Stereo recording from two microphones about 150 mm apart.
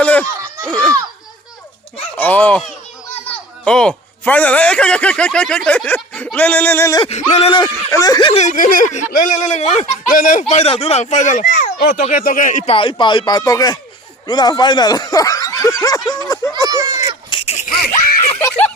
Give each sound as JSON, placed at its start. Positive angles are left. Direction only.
{"t": 0.0, "sound": "a sound", "side_deg": 10}
{"t": 0.7, "sound": "a child's voice", "side_deg": 5}
{"t": 2.1, "sound": "a man's voice", "side_deg": 10}
{"t": 7.0, "sound": "speech", "side_deg": 45}
{"t": 7.6, "sound": "speech", "side_deg": 25}
{"t": 8.3, "sound": "speech", "side_deg": 50}
{"t": 10.5, "sound": "speech", "side_deg": 45}
{"t": 12.0, "sound": "speech", "side_deg": 65}
{"t": 12.7, "sound": "speech", "side_deg": 35}
{"t": 16.6, "sound": "speech", "side_deg": -20}
{"t": 17.2, "sound": "a sound", "side_deg": 35}
{"t": 18.3, "sound": "a sound", "side_deg": 15}